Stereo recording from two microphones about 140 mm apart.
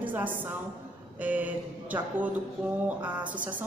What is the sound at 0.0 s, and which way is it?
A woman's voice, 10° right (ahead or behind).